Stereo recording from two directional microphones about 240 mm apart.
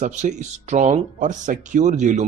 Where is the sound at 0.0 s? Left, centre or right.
Right.